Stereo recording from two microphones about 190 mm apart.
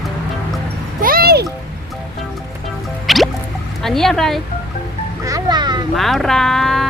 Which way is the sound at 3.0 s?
Centre (ahead or behind).